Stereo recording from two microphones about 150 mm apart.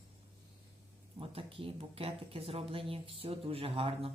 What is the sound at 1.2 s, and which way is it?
Speech, 40° right (ahead or behind).